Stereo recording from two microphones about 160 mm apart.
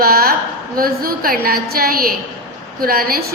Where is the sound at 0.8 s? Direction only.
65° right (ahead or behind).